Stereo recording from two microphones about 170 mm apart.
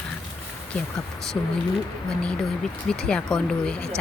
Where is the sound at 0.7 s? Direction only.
5° left (ahead or behind).